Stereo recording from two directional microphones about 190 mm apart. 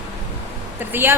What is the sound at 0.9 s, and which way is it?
Speech, 10° right (ahead or behind).